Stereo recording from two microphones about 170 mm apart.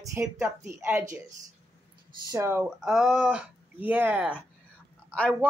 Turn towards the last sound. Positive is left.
turn(degrees=5)  # may be behind; listen again after turning